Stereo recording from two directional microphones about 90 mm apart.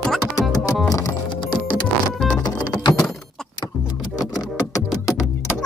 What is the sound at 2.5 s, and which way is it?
Vehicle, 50° left (ahead or behind).